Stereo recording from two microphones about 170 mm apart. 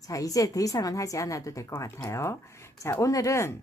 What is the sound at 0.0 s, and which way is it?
A woman's voice, 20° left (ahead or behind).